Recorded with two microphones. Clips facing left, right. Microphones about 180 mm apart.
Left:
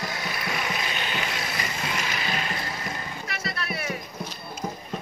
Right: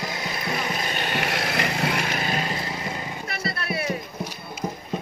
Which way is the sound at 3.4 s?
30° right (ahead or behind).